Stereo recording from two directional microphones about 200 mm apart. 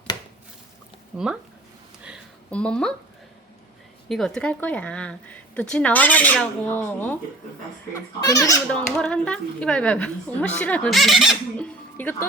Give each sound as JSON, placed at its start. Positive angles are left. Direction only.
{"t": 1.1, "sound": "a woman's voice", "side_deg": 0}
{"t": 2.5, "sound": "a woman's voice", "side_deg": 5}
{"t": 4.1, "sound": "a woman's voice", "side_deg": 0}
{"t": 9.0, "sound": "a woman's voice", "side_deg": 5}